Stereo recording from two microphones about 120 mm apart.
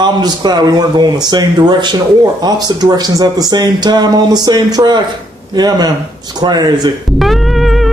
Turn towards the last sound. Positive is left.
turn(degrees=0)  # may be behind; listen again after turning